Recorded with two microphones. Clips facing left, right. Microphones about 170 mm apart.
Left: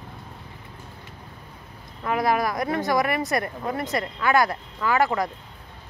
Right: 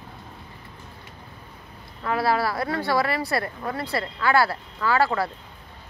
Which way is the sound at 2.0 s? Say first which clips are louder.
Even; 20° left (ahead or behind).